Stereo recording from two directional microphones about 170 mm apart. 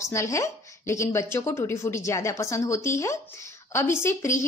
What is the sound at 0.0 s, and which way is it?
Speech, 15° left (ahead or behind).